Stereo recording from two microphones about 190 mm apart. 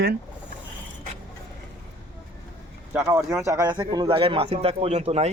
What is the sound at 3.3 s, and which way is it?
Speech, 15° right (ahead or behind).